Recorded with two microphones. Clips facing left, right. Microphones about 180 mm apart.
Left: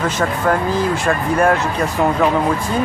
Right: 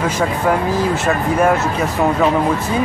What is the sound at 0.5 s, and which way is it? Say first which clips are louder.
Speech: even; 5° right (ahead or behind).